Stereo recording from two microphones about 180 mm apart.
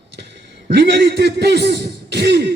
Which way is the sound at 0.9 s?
70° right (ahead or behind).